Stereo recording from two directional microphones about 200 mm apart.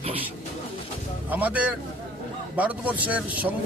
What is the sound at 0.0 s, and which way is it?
Bird, 30° right (ahead or behind).